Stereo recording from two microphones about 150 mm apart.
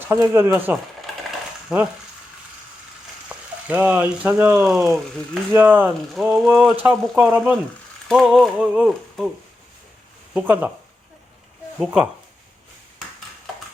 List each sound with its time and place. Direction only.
0.0 s speech: 15° right (ahead or behind)
1.7 s a sound: 5° right (ahead or behind)
3.2 s speech: 10° right (ahead or behind)
8.0 s a sound: centre (ahead or behind)
10.3 s speech: 10° right (ahead or behind)
11.8 s speech: 10° right (ahead or behind)